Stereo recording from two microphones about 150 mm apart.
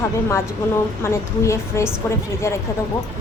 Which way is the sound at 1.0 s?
20° left (ahead or behind).